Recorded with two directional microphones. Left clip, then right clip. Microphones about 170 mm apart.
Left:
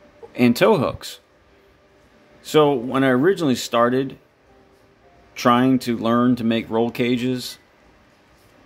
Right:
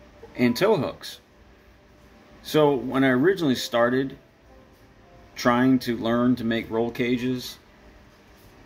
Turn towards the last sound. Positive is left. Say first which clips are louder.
# left 4 dB
turn(degrees=60)  # may be behind; listen again after turning